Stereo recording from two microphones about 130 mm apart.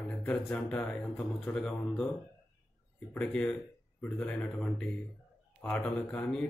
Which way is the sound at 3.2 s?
10° left (ahead or behind).